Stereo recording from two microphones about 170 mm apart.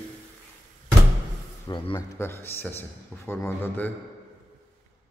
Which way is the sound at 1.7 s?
30° left (ahead or behind).